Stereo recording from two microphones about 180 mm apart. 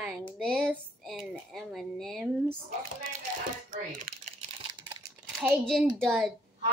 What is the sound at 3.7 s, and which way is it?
Typing, 50° right (ahead or behind).